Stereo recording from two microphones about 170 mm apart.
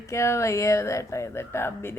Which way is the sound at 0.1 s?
15° left (ahead or behind).